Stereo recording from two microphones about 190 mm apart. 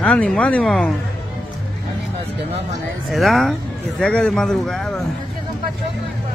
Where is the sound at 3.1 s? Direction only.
Centre (ahead or behind).